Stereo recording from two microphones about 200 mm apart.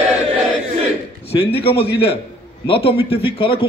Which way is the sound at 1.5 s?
30° left (ahead or behind).